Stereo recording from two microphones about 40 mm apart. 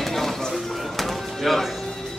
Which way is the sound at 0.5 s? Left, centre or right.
Centre.